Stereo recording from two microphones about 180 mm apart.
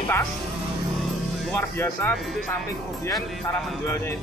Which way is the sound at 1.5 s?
10° left (ahead or behind).